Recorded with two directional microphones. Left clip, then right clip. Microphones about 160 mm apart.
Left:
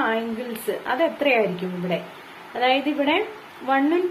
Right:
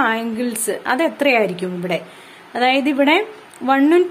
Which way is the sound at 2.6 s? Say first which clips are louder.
Right 5 dB; 40° right (ahead or behind).